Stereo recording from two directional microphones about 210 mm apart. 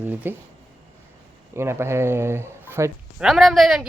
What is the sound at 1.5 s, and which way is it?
A man's voice, 10° right (ahead or behind).